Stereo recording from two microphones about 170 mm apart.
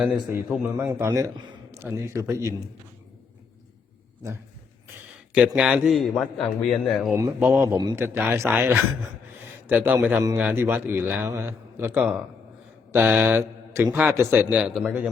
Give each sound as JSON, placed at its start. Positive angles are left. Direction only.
{"t": 0.4, "sound": "a man's voice", "side_deg": -5}
{"t": 0.9, "sound": "a man's voice", "side_deg": -15}
{"t": 5.5, "sound": "a man's voice", "side_deg": -5}
{"t": 7.1, "sound": "a man's voice", "side_deg": -10}
{"t": 12.9, "sound": "mantra", "side_deg": -10}
{"t": 13.9, "sound": "a man's voice", "side_deg": -10}
{"t": 14.6, "sound": "a man's voice", "side_deg": 0}